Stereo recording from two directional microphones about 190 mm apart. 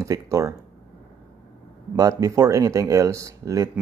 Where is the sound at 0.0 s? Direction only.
15° right (ahead or behind).